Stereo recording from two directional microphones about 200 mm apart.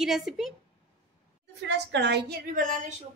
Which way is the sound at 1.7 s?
60° right (ahead or behind).